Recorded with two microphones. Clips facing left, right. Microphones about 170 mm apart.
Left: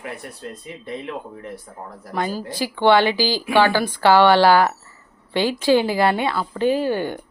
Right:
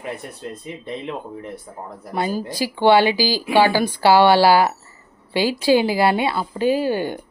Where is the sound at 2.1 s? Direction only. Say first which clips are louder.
Right 2 dB; 15° right (ahead or behind).